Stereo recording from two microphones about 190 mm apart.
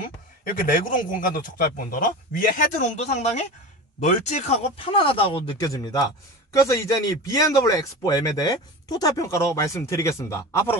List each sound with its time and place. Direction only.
0.0 s a man's voice: 45° left (ahead or behind); by 10.8 s 15° left (ahead or behind)